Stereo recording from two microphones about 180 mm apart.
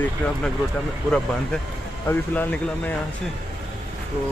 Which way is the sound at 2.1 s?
15° left (ahead or behind).